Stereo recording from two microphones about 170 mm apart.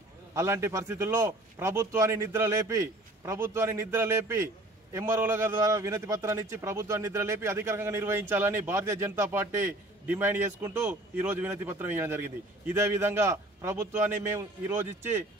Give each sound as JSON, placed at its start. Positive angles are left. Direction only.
{"t": 0.3, "sound": "a man's voice", "side_deg": -15}